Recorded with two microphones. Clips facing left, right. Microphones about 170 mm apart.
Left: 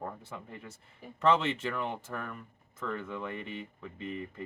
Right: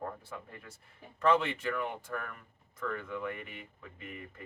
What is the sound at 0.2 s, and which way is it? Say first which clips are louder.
Speech: left 2 dB; 25° left (ahead or behind).